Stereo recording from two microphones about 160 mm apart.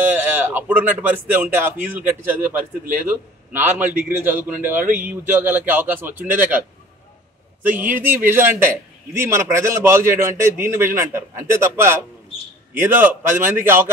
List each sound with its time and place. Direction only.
0.1 s a man's voice: 10° right (ahead or behind)
7.6 s a man's voice: 10° right (ahead or behind)